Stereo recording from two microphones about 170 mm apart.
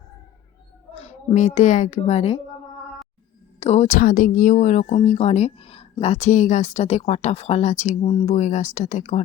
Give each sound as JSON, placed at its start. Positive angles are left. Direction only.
{"t": 0.9, "sound": "a woman's voice", "side_deg": 40}
{"t": 3.6, "sound": "speech", "side_deg": 40}